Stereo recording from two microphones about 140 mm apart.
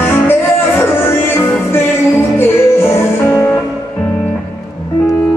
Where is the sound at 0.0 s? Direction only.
15° left (ahead or behind).